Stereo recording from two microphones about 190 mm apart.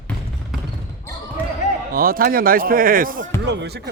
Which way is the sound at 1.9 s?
50° right (ahead or behind).